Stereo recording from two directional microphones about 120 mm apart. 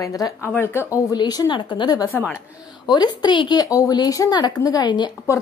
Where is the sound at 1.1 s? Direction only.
35° left (ahead or behind).